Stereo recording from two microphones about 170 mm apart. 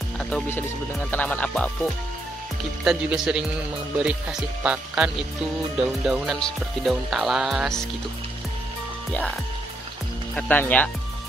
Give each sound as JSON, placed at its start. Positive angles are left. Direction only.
{"t": 0.2, "sound": "speech", "side_deg": 10}
{"t": 2.8, "sound": "music", "side_deg": -5}
{"t": 10.3, "sound": "speech", "side_deg": 10}